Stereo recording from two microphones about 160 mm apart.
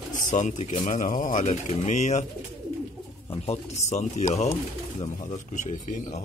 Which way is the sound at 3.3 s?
40° left (ahead or behind).